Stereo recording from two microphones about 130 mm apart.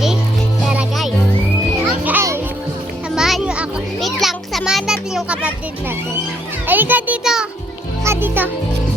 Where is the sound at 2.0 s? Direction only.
20° right (ahead or behind).